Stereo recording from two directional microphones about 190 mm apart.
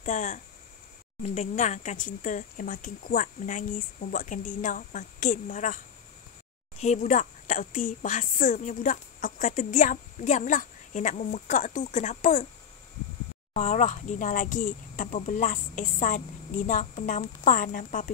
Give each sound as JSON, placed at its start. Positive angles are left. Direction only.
{"t": 0.0, "sound": "a woman's voice", "side_deg": 40}
{"t": 6.8, "sound": "a woman's voice", "side_deg": 40}
{"t": 13.5, "sound": "speech", "side_deg": 40}